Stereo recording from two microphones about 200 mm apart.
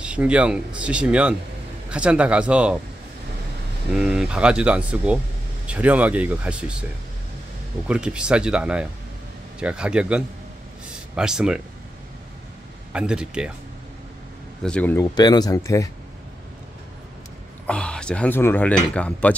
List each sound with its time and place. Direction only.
0.0 s speech: 5° right (ahead or behind)
3.9 s speech: 5° right (ahead or behind)
7.9 s speech: 5° right (ahead or behind)
12.9 s speech: 5° right (ahead or behind)
14.6 s speech: 5° left (ahead or behind)
15.1 s speech: 20° left (ahead or behind)
17.6 s speech: 5° left (ahead or behind)